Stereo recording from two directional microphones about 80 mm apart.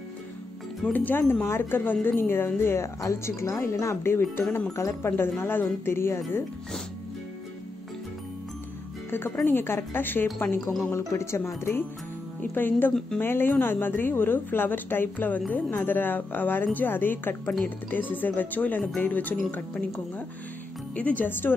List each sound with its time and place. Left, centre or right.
0.9 s a woman's voice: left
9.1 s a woman's voice: left